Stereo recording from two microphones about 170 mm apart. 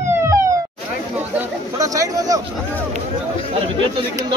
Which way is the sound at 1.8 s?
20° right (ahead or behind).